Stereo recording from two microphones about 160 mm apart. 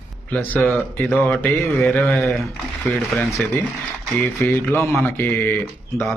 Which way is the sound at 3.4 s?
10° left (ahead or behind).